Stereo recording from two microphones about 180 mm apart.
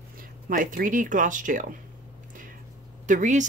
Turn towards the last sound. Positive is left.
turn(degrees=-45)  # may be behind; listen again after turning